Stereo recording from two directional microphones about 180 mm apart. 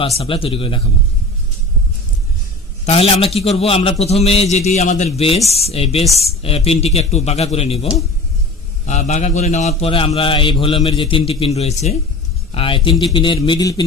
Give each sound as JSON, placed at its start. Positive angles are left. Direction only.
{"t": 0.0, "sound": "a man's voice", "side_deg": 30}
{"t": 2.8, "sound": "a man's voice", "side_deg": 30}
{"t": 8.9, "sound": "a man's voice", "side_deg": 40}